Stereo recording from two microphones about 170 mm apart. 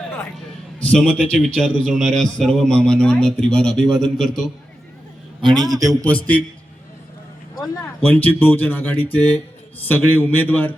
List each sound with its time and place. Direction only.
0.9 s a man's voice: 5° left (ahead or behind)
5.6 s a man's voice: 20° right (ahead or behind)
6.1 s a man's voice: 10° left (ahead or behind)
7.6 s a man's voice: 15° left (ahead or behind)